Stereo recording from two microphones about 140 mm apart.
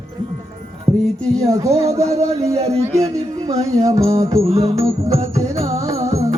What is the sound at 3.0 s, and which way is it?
Speech, 25° right (ahead or behind).